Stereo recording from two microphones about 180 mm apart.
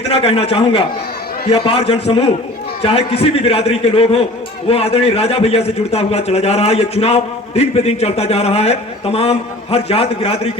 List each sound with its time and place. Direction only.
0.1 s a man's voice: 35° left (ahead or behind)